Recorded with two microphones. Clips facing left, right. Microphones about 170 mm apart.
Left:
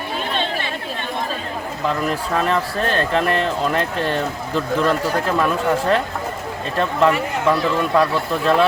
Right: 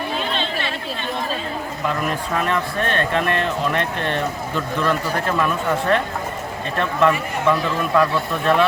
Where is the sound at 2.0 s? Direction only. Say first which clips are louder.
Left 2 dB; 35° left (ahead or behind).